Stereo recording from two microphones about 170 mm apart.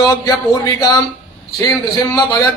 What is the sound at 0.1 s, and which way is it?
A man's voice, 20° left (ahead or behind).